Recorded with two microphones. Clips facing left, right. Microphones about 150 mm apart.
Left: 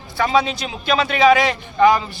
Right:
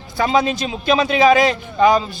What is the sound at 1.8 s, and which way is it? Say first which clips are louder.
Speech: even; 20° right (ahead or behind).